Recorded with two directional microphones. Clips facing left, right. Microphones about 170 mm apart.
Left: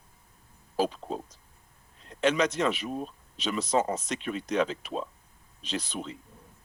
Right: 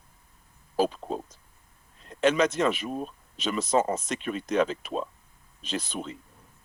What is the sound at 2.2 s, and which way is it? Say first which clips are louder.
Speech: right 2 dB; 50° right (ahead or behind).